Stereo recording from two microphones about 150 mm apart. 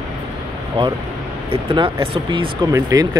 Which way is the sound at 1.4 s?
35° right (ahead or behind).